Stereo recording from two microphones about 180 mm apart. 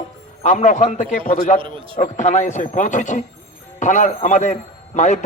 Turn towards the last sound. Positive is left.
turn(degrees=40)  # may be behind; listen again after turning